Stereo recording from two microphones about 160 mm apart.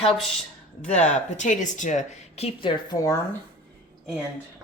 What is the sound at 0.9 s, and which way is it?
Speech, 50° left (ahead or behind).